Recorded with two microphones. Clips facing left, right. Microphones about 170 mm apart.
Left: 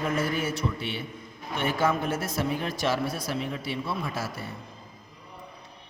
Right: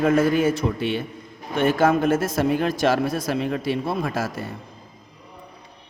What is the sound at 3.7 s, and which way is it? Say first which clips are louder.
Speech: right 7 dB; 50° right (ahead or behind).